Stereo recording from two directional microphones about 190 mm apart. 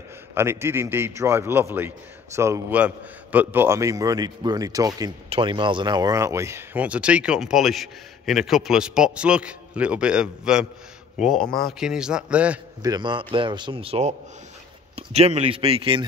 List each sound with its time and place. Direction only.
0.3 s a man's voice: 10° right (ahead or behind)
12.8 s speech: 20° right (ahead or behind)